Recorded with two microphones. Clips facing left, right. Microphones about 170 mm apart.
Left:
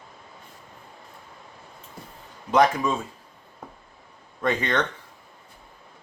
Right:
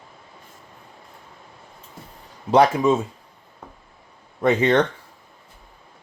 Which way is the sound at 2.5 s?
25° right (ahead or behind).